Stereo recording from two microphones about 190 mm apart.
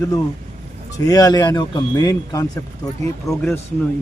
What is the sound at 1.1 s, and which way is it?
A man's voice, 20° left (ahead or behind).